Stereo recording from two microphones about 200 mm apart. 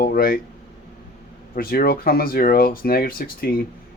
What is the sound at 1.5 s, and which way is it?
Speech, 45° left (ahead or behind).